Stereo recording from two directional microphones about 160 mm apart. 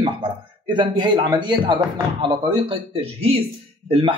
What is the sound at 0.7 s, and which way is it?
A man's voice, 30° right (ahead or behind).